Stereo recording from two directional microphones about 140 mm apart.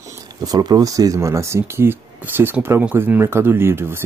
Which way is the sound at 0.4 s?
30° right (ahead or behind).